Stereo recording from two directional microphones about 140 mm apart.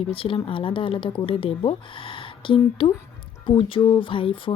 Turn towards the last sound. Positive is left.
turn(degrees=40)  # may be behind; listen again after turning